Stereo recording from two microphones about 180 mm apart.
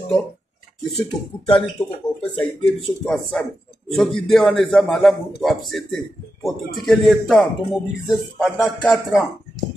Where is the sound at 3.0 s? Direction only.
5° left (ahead or behind).